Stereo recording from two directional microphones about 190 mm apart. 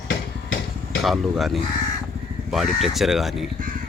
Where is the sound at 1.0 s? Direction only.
Centre (ahead or behind).